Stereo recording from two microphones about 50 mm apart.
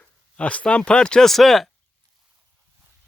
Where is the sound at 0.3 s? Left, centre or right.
Left.